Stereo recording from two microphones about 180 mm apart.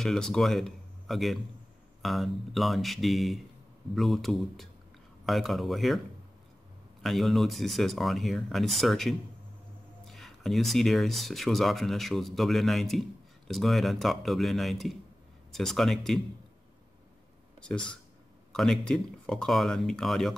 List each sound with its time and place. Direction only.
0.0 s speech: 5° left (ahead or behind)
7.0 s speech: centre (ahead or behind)
17.6 s speech: 5° left (ahead or behind)